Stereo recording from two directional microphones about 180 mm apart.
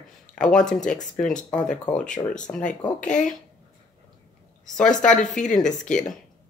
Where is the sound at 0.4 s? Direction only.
5° left (ahead or behind).